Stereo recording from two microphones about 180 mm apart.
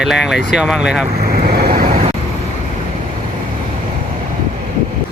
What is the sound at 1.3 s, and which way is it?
Vehicle, 55° right (ahead or behind).